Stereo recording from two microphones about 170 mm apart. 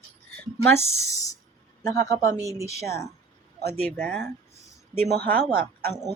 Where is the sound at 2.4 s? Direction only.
20° right (ahead or behind).